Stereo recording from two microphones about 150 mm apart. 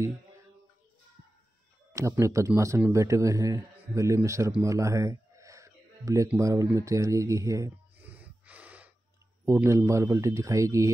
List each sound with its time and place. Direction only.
1.9 s a man's voice: 20° right (ahead or behind)
8.0 s gasp: 10° right (ahead or behind)
9.5 s a man's voice: 15° right (ahead or behind)